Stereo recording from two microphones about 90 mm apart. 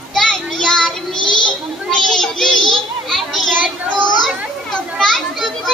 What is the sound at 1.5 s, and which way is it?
Children playing, 5° left (ahead or behind).